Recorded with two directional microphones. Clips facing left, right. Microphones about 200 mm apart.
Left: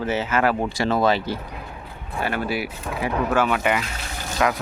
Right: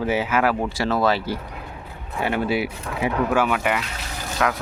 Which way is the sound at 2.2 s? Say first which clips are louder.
Right 3 dB; 20° right (ahead or behind).